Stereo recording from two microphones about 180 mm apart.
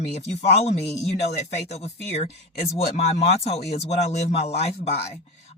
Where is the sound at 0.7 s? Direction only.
70° left (ahead or behind).